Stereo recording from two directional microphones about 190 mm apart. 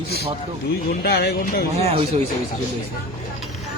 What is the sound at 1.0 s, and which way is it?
Speech, 55° left (ahead or behind).